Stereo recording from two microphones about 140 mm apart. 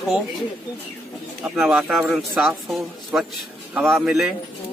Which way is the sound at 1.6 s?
5° right (ahead or behind).